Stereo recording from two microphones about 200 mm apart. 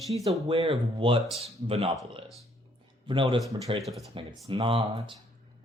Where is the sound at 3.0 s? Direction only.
25° right (ahead or behind).